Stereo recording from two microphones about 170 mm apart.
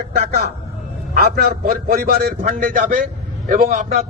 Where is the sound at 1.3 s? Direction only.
60° right (ahead or behind).